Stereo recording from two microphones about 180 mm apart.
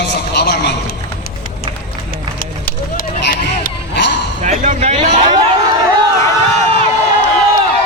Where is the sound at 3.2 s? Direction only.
50° left (ahead or behind).